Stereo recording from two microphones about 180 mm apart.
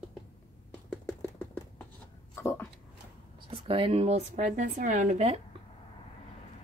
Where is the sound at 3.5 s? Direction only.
30° right (ahead or behind).